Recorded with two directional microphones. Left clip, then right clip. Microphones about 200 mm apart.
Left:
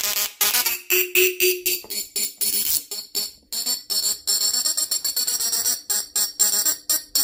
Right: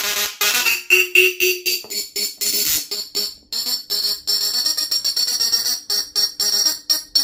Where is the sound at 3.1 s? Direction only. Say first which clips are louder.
Right 5 dB; 15° left (ahead or behind).